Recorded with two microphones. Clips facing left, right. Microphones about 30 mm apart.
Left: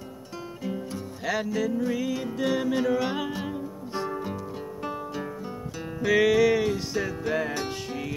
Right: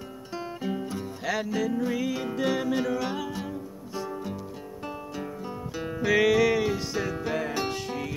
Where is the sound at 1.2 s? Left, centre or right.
Centre.